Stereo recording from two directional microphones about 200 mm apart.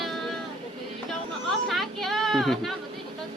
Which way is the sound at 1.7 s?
Centre (ahead or behind).